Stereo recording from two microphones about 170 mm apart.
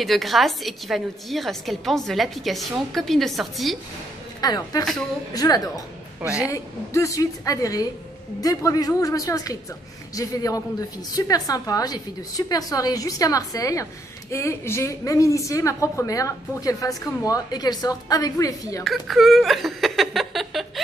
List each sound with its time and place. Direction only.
0.0 s a woman's voice: centre (ahead or behind)
4.4 s a woman's voice: 25° left (ahead or behind)
6.2 s a man's voice: 5° right (ahead or behind)
6.5 s a woman's voice: 15° left (ahead or behind)
18.9 s speech: centre (ahead or behind)